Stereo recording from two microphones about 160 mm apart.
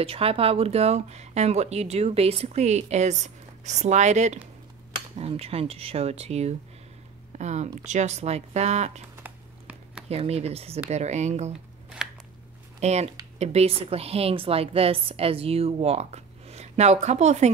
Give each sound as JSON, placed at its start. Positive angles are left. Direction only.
{"t": 0.0, "sound": "a woman's voice", "side_deg": -35}
{"t": 9.1, "sound": "a sound", "side_deg": -10}
{"t": 10.0, "sound": "a woman's voice", "side_deg": -40}
{"t": 12.8, "sound": "a woman's voice", "side_deg": -45}